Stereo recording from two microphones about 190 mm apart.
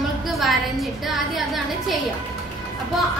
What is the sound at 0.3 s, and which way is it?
A woman's voice, centre (ahead or behind).